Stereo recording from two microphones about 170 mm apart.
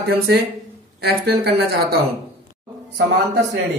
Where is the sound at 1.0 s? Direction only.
70° right (ahead or behind).